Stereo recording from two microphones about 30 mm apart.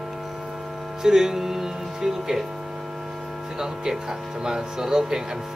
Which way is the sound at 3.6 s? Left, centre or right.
Centre.